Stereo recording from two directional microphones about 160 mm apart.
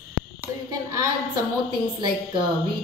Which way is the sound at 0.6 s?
25° right (ahead or behind).